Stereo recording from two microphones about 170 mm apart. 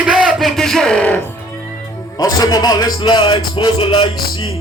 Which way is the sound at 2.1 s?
20° left (ahead or behind).